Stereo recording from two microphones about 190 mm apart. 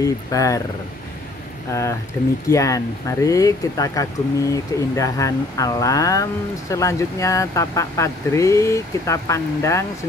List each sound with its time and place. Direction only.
0.0 s speech: 20° left (ahead or behind)
1.7 s speech: 15° left (ahead or behind)